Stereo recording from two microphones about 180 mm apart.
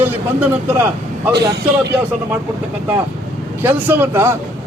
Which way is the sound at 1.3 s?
65° right (ahead or behind).